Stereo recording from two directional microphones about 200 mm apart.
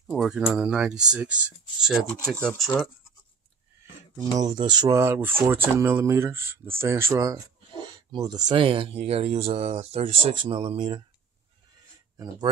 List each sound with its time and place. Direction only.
0.0 s speech: 5° right (ahead or behind)
4.4 s speech: 20° right (ahead or behind)